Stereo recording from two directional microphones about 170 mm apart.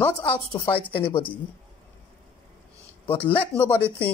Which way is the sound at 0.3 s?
30° left (ahead or behind).